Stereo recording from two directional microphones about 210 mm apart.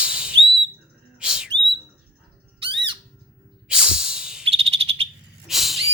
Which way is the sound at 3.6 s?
5° right (ahead or behind).